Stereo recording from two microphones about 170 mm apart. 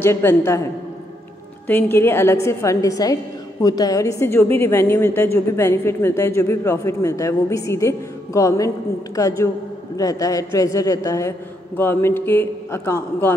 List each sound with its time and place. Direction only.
0.0 s a woman's voice: 15° left (ahead or behind)
1.7 s a woman's voice: 10° left (ahead or behind)